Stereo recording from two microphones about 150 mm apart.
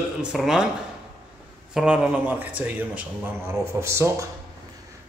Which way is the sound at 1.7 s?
5° right (ahead or behind).